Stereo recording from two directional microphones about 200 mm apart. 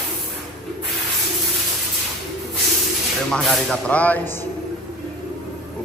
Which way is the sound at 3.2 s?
Centre (ahead or behind).